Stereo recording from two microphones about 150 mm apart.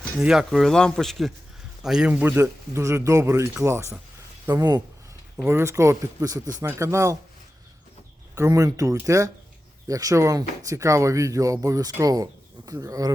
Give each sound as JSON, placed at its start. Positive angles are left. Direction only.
{"t": 0.2, "sound": "speech", "side_deg": -5}
{"t": 8.4, "sound": "speech", "side_deg": -20}